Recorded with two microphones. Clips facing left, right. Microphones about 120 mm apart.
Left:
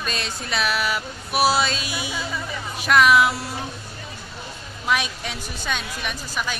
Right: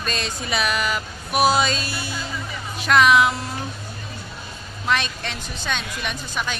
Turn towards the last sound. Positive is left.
turn(degrees=5)  # may be behind; listen again after turning